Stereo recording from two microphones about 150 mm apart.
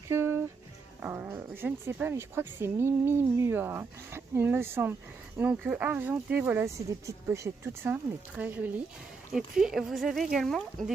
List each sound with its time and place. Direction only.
0.1 s music: 15° right (ahead or behind)
1.0 s speech: 15° right (ahead or behind); by 10.9 s centre (ahead or behind)